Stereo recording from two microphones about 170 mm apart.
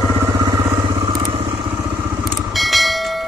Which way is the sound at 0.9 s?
30° right (ahead or behind).